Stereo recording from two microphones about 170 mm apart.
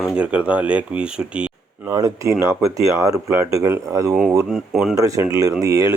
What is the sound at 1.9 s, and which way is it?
Speech, 20° right (ahead or behind).